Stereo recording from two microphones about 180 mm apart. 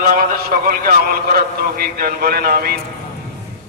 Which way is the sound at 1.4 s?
55° right (ahead or behind).